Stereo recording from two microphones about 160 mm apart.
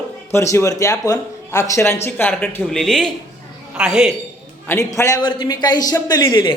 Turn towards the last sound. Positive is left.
turn(degrees=30)  # may be behind; listen again after turning